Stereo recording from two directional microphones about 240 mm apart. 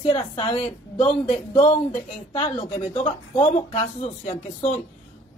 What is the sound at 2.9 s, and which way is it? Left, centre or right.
Speech, left.